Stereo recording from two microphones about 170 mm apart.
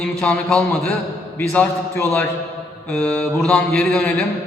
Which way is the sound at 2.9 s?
5° left (ahead or behind).